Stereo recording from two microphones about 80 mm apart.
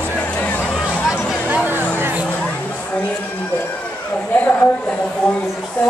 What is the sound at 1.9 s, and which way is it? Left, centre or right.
Music, right.